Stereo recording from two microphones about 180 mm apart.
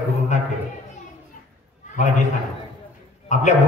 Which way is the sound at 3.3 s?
40° left (ahead or behind).